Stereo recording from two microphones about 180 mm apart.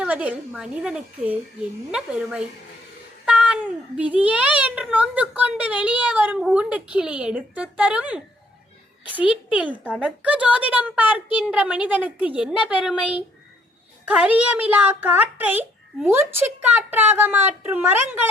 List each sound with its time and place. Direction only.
0.0 s a woman's voice: 5° right (ahead or behind)